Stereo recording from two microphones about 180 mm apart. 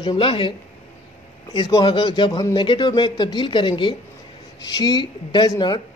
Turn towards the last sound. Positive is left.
turn(degrees=25)  # may be behind; listen again after turning